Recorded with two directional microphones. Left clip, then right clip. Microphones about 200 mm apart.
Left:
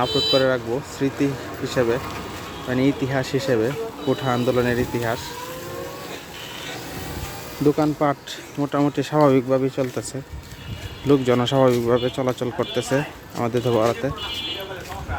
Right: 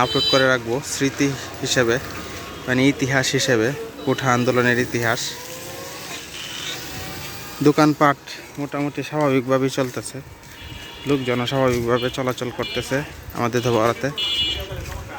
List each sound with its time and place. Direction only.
0.0 s speech: 5° right (ahead or behind)
7.8 s speech: 20° right (ahead or behind)
8.6 s speech: 15° left (ahead or behind)
9.3 s speech: 5° right (ahead or behind)
11.1 s speech: 15° left (ahead or behind); by 14.1 s centre (ahead or behind)